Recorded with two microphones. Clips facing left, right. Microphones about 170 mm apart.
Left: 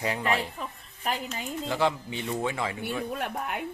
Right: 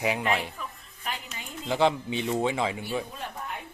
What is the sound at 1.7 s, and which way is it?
Speech, 20° right (ahead or behind).